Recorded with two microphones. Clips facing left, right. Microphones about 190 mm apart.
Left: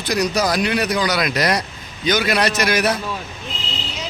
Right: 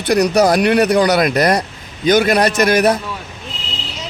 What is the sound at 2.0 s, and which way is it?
Speech, 50° right (ahead or behind).